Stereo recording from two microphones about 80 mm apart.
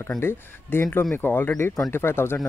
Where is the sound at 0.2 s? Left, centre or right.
Left.